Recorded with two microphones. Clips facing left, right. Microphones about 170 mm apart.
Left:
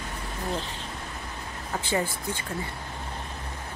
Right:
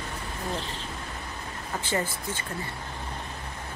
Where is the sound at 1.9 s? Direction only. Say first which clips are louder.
Left 2 dB; 15° left (ahead or behind).